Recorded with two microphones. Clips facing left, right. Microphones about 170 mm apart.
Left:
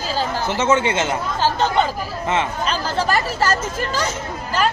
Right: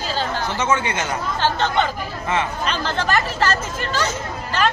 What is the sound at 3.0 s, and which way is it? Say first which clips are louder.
Speech: even; 10° left (ahead or behind).